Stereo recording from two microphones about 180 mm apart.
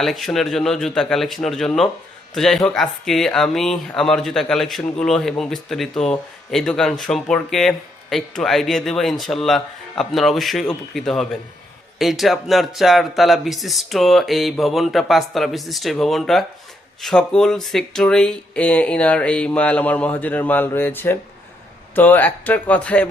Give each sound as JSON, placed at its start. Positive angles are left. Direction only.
{"t": 0.0, "sound": "speech", "side_deg": 0}